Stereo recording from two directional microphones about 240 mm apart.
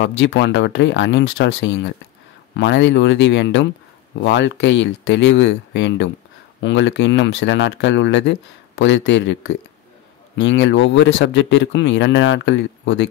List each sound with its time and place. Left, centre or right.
0.0 s speech: left